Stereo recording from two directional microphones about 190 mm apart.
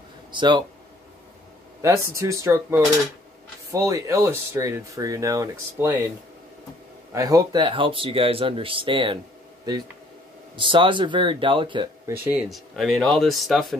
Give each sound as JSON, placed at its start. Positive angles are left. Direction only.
{"t": 0.3, "sound": "speech", "side_deg": -25}
{"t": 1.8, "sound": "speech", "side_deg": -15}
{"t": 7.2, "sound": "speech", "side_deg": -20}
{"t": 10.5, "sound": "speech", "side_deg": -25}
{"t": 12.3, "sound": "speech", "side_deg": 0}